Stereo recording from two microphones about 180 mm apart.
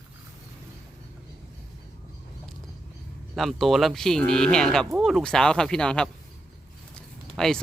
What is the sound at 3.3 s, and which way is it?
Speech, centre (ahead or behind).